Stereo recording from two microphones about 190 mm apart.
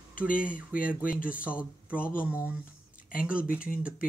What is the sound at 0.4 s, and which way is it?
Speech, 5° right (ahead or behind).